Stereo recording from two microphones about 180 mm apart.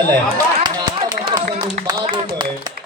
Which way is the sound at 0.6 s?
25° right (ahead or behind).